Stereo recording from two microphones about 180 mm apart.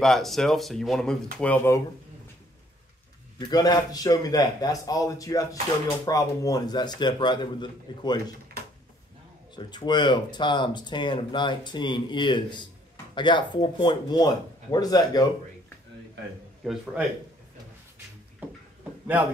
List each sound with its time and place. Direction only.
0.0 s speech: centre (ahead or behind)
3.3 s speech: 20° left (ahead or behind)
8.6 s drawer open or close: 60° right (ahead or behind)
9.6 s speech: 25° left (ahead or behind)
16.6 s speech: centre (ahead or behind)
18.4 s a sound: 10° right (ahead or behind)